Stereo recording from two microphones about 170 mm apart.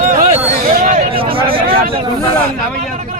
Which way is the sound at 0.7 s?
50° right (ahead or behind).